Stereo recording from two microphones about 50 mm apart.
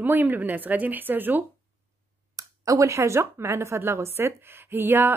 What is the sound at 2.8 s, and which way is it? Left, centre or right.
Speech, right.